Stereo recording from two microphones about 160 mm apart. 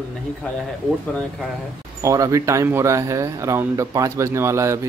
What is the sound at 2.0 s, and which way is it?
Speech, 20° right (ahead or behind).